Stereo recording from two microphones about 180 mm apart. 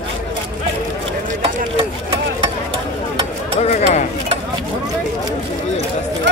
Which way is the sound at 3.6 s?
40° left (ahead or behind).